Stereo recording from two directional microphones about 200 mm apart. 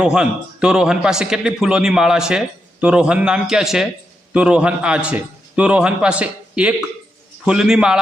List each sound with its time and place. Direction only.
0.0 s a man's voice: 5° right (ahead or behind)